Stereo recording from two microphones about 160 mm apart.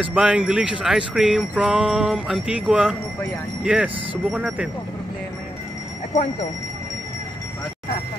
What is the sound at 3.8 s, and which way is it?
Speech, 35° right (ahead or behind).